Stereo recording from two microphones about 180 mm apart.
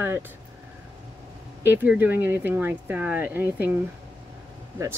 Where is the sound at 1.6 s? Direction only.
10° right (ahead or behind).